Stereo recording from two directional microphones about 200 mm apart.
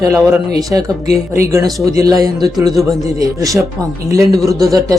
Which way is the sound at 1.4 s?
15° right (ahead or behind).